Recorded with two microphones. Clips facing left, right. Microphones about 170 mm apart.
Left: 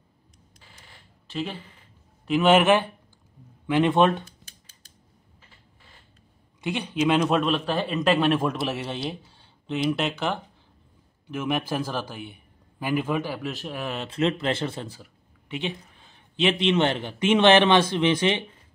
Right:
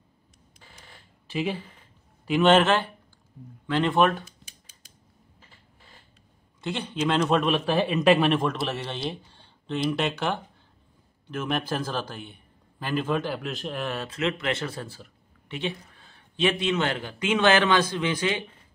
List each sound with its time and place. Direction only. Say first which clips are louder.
1.3 s speech: right 3 dB; 10° right (ahead or behind)
2.2 s a man's voice: left 1 dB; 5° left (ahead or behind); by 4.2 s 20° left (ahead or behind)
6.6 s a man's voice: left 3 dB; 10° left (ahead or behind)
7.4 s speech: right 2 dB; 5° right (ahead or behind)
8.4 s a man's voice: left 1 dB; 10° left (ahead or behind)
13.9 s speech: left 3 dB; 30° left (ahead or behind)